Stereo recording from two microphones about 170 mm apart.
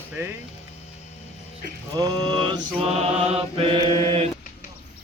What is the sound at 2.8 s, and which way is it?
Mantra, 35° right (ahead or behind).